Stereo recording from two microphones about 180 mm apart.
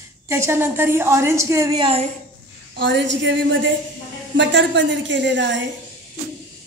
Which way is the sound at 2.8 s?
80° right.